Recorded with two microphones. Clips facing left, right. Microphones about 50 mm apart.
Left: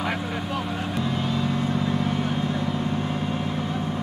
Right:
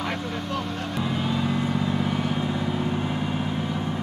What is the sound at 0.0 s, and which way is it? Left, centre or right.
Vehicle, centre.